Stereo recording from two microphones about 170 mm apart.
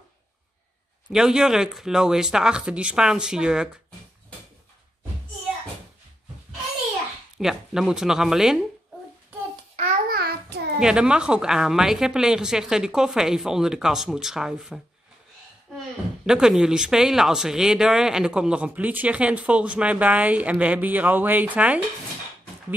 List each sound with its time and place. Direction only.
1.1 s a woman's voice: 5° right (ahead or behind)
7.3 s a woman's voice: centre (ahead or behind)
10.0 s child singing: 65° right (ahead or behind)
10.8 s a woman's voice: 5° right (ahead or behind)
16.3 s speech: 5° right (ahead or behind)